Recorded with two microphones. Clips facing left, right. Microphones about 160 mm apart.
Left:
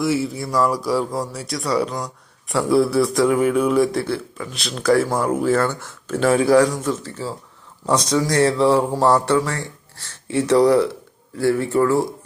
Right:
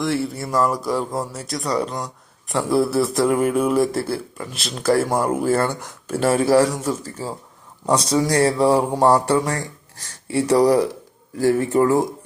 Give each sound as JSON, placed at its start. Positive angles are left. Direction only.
{"t": 0.0, "sound": "a man's voice", "side_deg": 5}
{"t": 9.5, "sound": "a sound", "side_deg": -40}
{"t": 10.0, "sound": "speech", "side_deg": -10}